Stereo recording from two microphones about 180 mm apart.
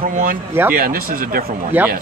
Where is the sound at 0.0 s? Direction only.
50° right (ahead or behind).